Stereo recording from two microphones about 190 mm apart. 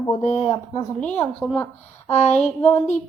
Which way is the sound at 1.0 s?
10° left (ahead or behind).